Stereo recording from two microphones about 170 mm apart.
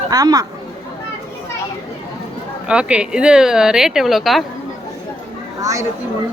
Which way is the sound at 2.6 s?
5° right (ahead or behind).